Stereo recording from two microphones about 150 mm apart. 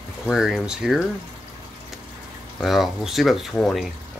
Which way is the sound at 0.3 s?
Centre (ahead or behind).